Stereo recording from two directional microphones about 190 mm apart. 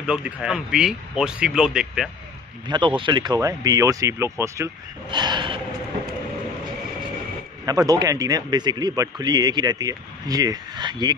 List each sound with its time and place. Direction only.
0.0 s speech: 5° right (ahead or behind)
2.7 s speech: 25° right (ahead or behind)
7.6 s speech: 20° right (ahead or behind)